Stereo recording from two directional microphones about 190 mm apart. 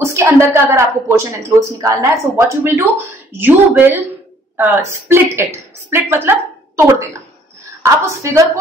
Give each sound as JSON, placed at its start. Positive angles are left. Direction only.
{"t": 0.0, "sound": "a woman's voice", "side_deg": -15}
{"t": 7.8, "sound": "a woman's voice", "side_deg": -15}